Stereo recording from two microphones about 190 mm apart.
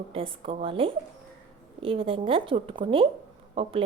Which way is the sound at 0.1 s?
30° right (ahead or behind).